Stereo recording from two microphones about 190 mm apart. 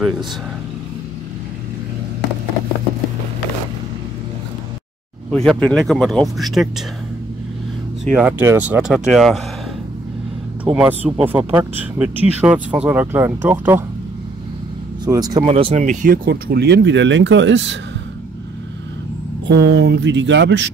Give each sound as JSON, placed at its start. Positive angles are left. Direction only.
{"t": 5.3, "sound": "speech", "side_deg": 5}
{"t": 8.1, "sound": "speech", "side_deg": -5}
{"t": 10.6, "sound": "speech", "side_deg": -5}
{"t": 15.0, "sound": "speech", "side_deg": -20}
{"t": 15.5, "sound": "speech", "side_deg": -35}
{"t": 19.4, "sound": "speech", "side_deg": -65}